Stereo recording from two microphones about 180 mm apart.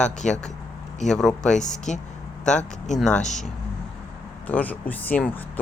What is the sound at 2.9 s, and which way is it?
Speech, 5° left (ahead or behind).